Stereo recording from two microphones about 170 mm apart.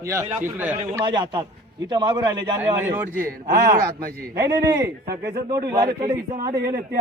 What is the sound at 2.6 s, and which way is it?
Speech, 15° right (ahead or behind).